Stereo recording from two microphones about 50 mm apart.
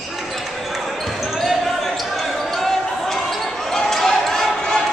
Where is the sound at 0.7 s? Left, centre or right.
Centre.